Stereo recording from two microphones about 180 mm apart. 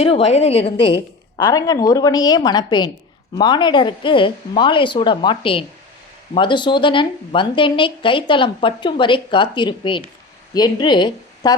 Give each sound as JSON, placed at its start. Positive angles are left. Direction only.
{"t": 0.0, "sound": "a woman's voice", "side_deg": 30}
{"t": 1.5, "sound": "a woman's voice", "side_deg": 20}